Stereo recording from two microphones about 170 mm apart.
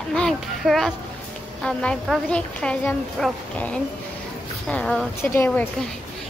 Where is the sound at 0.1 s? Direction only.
5° left (ahead or behind).